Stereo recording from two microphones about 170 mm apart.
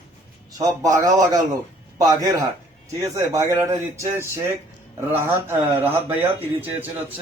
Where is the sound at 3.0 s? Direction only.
20° right (ahead or behind).